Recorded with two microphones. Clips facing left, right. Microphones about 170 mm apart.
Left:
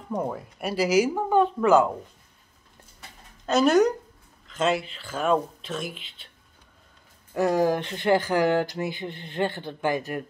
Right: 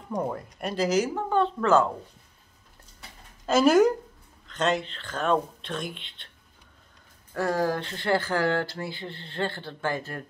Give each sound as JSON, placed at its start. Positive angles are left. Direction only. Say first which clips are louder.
{"t": 0.1, "sound": "speech", "louder": "left 1 dB", "side_deg": 5}
{"t": 3.4, "sound": "speech", "louder": "even", "side_deg": 0}
{"t": 7.3, "sound": "speech", "louder": "left 4 dB", "side_deg": 15}